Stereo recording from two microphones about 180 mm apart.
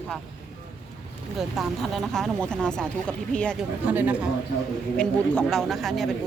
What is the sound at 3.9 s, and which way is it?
Speech, 10° right (ahead or behind).